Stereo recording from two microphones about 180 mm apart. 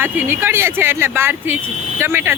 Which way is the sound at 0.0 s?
10° right (ahead or behind).